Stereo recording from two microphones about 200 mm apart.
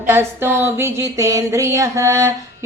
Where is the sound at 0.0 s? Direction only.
10° right (ahead or behind).